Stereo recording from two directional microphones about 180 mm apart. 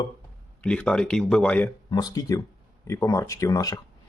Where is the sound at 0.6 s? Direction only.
5° left (ahead or behind).